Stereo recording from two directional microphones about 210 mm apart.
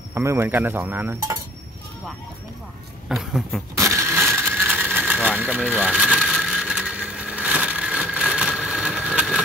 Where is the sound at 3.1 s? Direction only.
Centre (ahead or behind).